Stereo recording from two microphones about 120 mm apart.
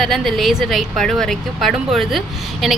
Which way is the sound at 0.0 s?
Centre (ahead or behind).